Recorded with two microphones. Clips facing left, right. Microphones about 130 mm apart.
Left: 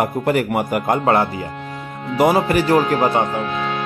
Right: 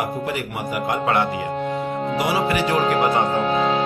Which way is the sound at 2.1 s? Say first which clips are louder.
Left 7 dB; 50° left (ahead or behind).